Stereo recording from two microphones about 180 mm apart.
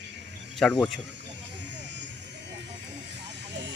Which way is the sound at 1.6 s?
75° right (ahead or behind).